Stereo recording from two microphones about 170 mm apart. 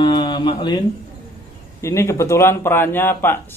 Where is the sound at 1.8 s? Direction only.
15° left (ahead or behind).